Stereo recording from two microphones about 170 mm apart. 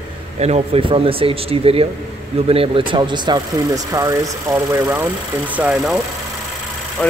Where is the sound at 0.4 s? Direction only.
35° right (ahead or behind); by 5.9 s 5° right (ahead or behind).